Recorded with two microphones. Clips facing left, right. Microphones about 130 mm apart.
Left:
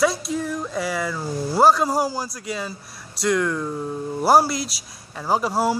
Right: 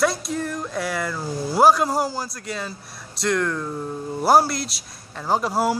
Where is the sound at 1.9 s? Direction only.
5° left (ahead or behind).